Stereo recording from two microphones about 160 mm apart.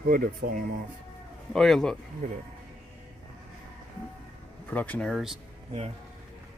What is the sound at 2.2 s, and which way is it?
Speech, 55° right (ahead or behind).